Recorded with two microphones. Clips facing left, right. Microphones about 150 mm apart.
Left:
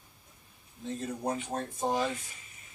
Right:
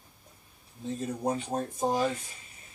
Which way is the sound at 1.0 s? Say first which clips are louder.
Right 3 dB; 20° right (ahead or behind).